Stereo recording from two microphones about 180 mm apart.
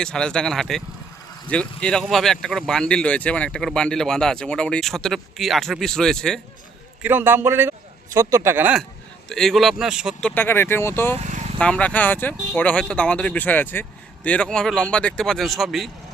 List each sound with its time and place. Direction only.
0.0 s speech: 5° left (ahead or behind)
7.0 s speech: 10° right (ahead or behind)
9.3 s speech: centre (ahead or behind)
11.2 s vehicle: 40° right (ahead or behind)
11.6 s speech: 5° left (ahead or behind)